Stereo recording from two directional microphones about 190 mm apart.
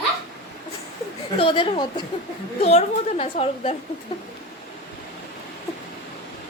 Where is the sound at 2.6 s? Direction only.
35° left (ahead or behind).